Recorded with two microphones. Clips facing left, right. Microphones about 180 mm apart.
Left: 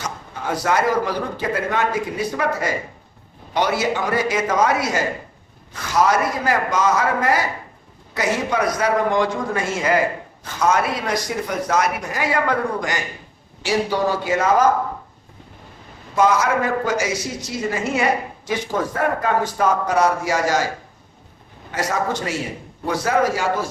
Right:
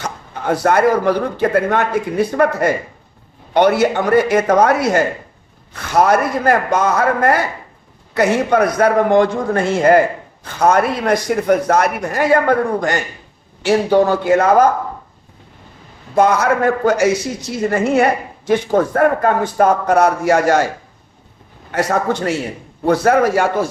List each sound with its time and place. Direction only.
0.0 s a woman's voice: 60° right (ahead or behind)
16.1 s a woman's voice: 60° right (ahead or behind)
21.7 s a woman's voice: 60° right (ahead or behind)